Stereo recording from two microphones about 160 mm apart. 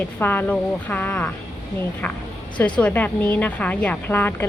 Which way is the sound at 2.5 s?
10° left (ahead or behind).